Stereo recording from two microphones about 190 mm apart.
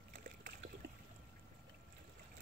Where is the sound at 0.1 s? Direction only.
45° right (ahead or behind).